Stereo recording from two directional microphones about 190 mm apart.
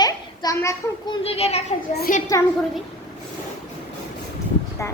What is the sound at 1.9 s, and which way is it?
Speech, 50° left (ahead or behind).